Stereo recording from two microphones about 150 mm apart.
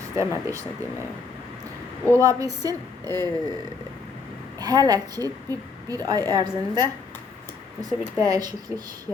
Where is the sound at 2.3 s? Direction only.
25° right (ahead or behind).